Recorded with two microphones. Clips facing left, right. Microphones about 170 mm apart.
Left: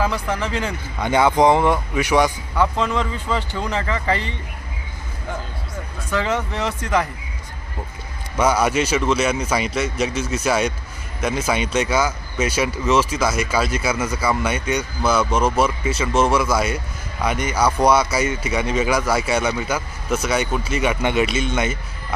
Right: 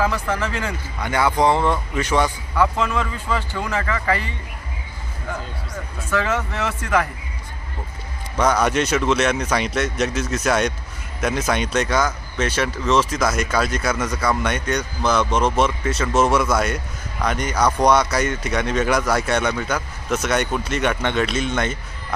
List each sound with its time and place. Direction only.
0.0 s speech: 15° left (ahead or behind)
6.1 s speech: 15° left (ahead or behind)
8.4 s speech: 5° left (ahead or behind)